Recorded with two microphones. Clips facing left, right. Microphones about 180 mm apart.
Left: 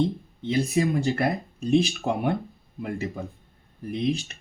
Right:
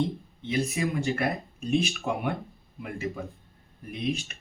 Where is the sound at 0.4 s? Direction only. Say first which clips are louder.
Left 5 dB; 35° left (ahead or behind).